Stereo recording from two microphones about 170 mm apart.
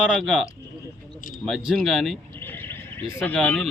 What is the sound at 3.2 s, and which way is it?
Speech, 10° left (ahead or behind).